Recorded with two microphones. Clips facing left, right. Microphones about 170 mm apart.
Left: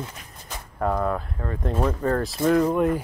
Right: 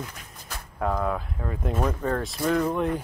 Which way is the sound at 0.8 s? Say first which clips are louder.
Left 2 dB; centre (ahead or behind).